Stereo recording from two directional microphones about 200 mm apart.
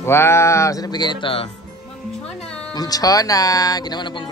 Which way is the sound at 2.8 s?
20° left (ahead or behind).